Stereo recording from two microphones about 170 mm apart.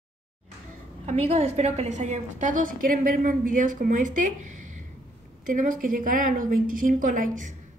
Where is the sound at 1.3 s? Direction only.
40° right (ahead or behind).